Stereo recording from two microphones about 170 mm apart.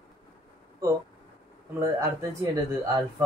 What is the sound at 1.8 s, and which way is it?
Speech, 20° right (ahead or behind).